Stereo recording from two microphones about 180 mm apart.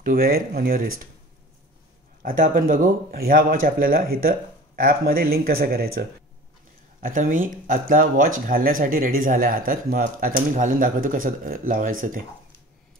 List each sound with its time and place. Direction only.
0.0 s speech: 55° right (ahead or behind)
2.2 s speech: 50° right (ahead or behind)
7.0 s speech: 45° right (ahead or behind)